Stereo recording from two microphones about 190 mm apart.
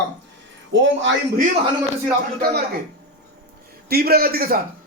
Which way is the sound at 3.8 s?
55° right (ahead or behind).